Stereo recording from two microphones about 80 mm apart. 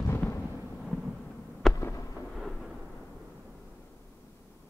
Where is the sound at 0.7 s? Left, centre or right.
Centre.